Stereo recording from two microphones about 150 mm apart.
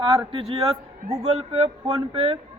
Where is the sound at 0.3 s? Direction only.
40° right (ahead or behind).